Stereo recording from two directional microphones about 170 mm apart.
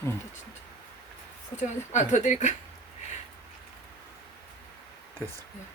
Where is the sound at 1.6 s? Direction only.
45° left (ahead or behind).